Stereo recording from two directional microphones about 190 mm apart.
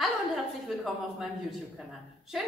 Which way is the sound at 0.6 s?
Centre (ahead or behind).